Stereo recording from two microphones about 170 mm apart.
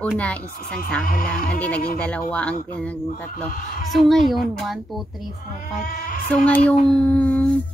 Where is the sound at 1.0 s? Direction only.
55° left (ahead or behind).